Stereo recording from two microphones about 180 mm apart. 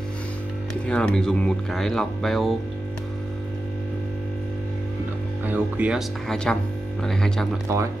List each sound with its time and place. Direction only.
0.8 s speech: 5° left (ahead or behind)
5.4 s speech: 10° right (ahead or behind)
7.6 s speech: 15° right (ahead or behind)